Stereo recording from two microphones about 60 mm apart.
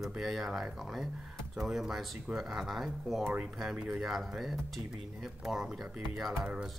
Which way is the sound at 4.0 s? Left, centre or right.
Centre.